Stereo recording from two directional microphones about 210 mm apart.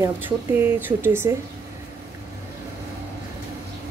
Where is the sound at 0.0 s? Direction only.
10° right (ahead or behind).